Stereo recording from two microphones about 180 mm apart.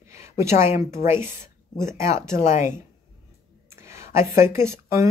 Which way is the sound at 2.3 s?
40° left (ahead or behind).